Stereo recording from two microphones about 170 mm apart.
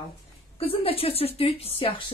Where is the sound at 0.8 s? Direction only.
35° left (ahead or behind).